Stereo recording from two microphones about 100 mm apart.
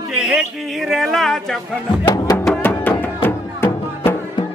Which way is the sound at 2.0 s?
40° left (ahead or behind).